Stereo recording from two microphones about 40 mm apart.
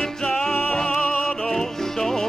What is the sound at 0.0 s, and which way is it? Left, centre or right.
Music, centre.